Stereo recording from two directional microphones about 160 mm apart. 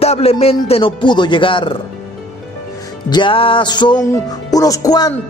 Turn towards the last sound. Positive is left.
turn(degrees=25)  # may be behind; listen again after turning